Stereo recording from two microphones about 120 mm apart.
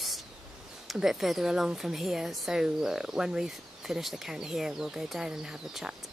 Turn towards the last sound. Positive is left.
turn(degrees=-5)  # may be behind; listen again after turning